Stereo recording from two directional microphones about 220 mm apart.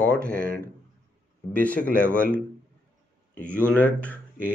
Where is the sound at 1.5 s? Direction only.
5° left (ahead or behind).